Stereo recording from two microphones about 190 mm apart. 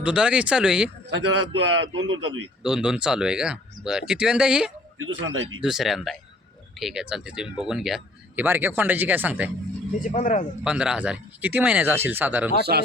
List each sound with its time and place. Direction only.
0.0 s speech: 5° right (ahead or behind)
1.1 s a man's voice: 85° right
2.6 s speech: 5° right (ahead or behind)
4.9 s a man's voice: 90° right
5.6 s speech: centre (ahead or behind)
10.0 s speech: 45° left (ahead or behind)
10.6 s speech: 5° right (ahead or behind)
12.7 s speech: 50° right (ahead or behind)